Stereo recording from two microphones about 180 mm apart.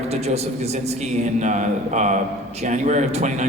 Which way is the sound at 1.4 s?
40° right (ahead or behind).